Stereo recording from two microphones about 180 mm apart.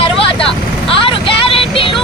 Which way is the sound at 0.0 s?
30° left (ahead or behind).